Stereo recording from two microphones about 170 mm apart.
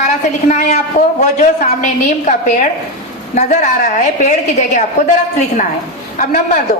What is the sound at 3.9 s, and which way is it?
Speech, 45° left (ahead or behind).